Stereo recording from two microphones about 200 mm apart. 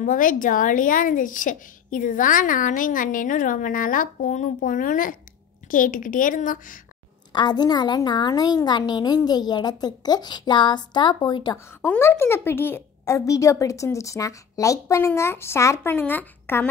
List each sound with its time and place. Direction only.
0.0 s speech: 40° left (ahead or behind)
7.3 s a woman's voice: 20° left (ahead or behind)